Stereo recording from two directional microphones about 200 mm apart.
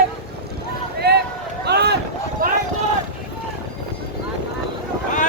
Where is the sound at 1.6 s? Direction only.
55° right (ahead or behind).